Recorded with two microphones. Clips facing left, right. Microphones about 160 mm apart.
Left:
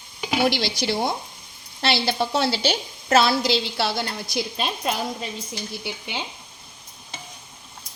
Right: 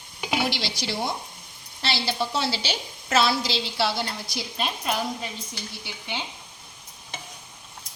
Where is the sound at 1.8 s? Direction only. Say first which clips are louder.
Left 4 dB; 55° left (ahead or behind).